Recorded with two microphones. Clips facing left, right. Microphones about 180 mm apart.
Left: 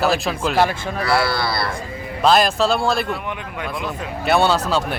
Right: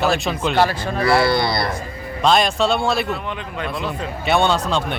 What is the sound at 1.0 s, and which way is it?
Speech, 20° right (ahead or behind).